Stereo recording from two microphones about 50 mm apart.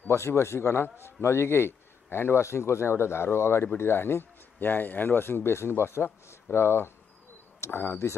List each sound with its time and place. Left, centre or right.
0.1 s a man's voice: left
2.4 s a man's voice: left